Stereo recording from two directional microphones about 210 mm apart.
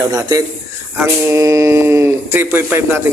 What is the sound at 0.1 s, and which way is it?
Speech, 15° right (ahead or behind).